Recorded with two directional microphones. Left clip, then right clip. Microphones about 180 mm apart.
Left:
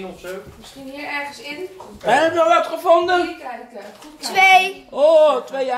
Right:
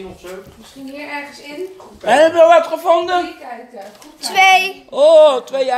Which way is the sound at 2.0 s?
45° right (ahead or behind).